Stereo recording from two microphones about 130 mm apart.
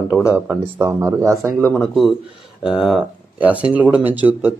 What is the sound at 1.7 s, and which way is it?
Speech, centre (ahead or behind).